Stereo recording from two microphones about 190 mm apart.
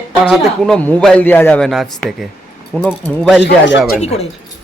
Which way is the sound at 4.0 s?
35° left (ahead or behind).